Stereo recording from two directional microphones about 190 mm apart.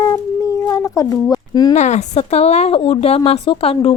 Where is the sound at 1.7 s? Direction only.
40° left (ahead or behind).